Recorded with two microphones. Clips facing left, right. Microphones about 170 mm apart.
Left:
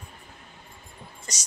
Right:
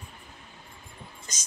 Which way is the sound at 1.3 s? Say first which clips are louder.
Left 9 dB; 75° left (ahead or behind).